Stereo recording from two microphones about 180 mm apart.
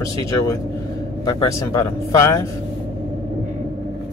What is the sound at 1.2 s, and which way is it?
Speech, 20° left (ahead or behind).